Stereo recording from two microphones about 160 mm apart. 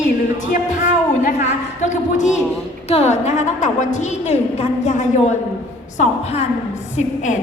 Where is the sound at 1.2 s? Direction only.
50° left (ahead or behind).